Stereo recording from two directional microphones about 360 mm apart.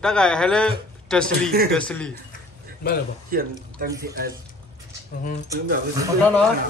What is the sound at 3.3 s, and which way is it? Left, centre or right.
Speech, right.